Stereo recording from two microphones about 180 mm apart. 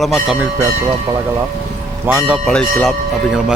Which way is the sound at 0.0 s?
Centre (ahead or behind).